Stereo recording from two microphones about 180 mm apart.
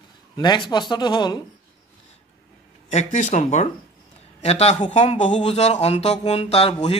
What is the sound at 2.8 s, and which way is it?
Speech, 40° left (ahead or behind).